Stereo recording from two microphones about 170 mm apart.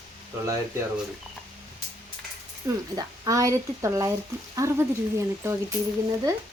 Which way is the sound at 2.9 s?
20° right (ahead or behind).